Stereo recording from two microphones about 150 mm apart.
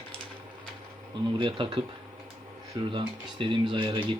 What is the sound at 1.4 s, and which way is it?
Speech, 35° right (ahead or behind).